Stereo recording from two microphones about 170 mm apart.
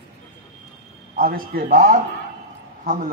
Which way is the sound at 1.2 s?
55° right (ahead or behind).